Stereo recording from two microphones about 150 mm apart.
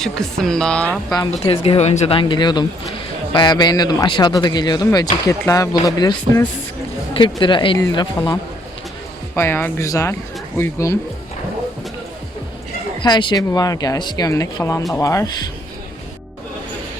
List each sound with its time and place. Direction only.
0.0 s speech: 5° left (ahead or behind)
1.5 s speech: 40° left (ahead or behind); by 10.9 s 20° left (ahead or behind)
13.0 s speech: 30° left (ahead or behind)